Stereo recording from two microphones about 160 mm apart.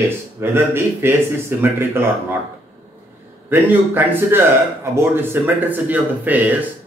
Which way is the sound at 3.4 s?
10° right (ahead or behind).